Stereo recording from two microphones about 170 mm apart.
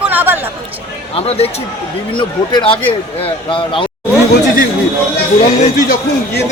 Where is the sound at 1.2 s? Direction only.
35° left (ahead or behind).